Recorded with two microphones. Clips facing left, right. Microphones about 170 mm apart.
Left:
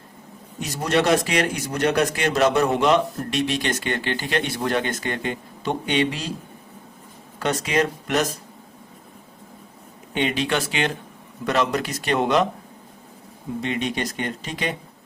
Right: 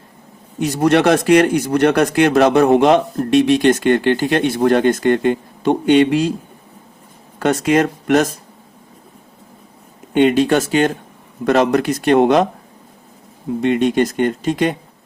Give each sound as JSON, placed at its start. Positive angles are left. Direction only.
{"t": 0.6, "sound": "speech", "side_deg": -60}
{"t": 7.3, "sound": "speech", "side_deg": -50}
{"t": 10.2, "sound": "speech", "side_deg": -45}
{"t": 13.6, "sound": "speech", "side_deg": -50}